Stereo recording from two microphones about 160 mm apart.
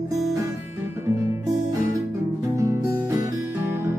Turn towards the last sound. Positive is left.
turn(degrees=-20)  # may be behind; listen again after turning